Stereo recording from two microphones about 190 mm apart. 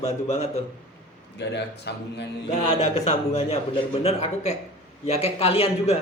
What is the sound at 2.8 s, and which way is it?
A man's voice, 35° left (ahead or behind).